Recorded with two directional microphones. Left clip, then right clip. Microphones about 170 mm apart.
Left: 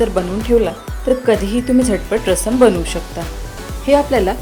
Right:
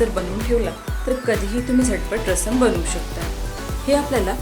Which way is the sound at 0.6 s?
40° left (ahead or behind).